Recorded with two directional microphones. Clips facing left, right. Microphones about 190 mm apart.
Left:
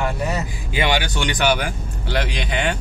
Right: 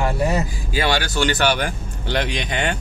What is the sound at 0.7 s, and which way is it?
Speech, 20° left (ahead or behind).